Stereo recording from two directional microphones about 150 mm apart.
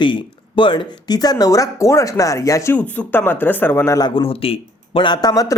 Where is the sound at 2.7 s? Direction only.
10° left (ahead or behind).